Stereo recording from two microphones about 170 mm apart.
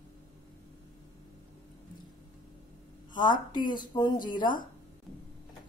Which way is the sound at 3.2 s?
25° left (ahead or behind).